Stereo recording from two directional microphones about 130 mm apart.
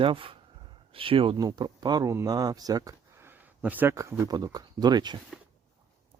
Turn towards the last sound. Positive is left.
turn(degrees=-35)  # may be behind; listen again after turning